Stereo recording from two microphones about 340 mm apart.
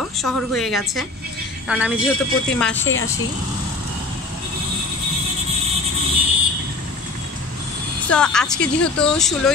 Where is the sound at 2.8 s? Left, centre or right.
Left.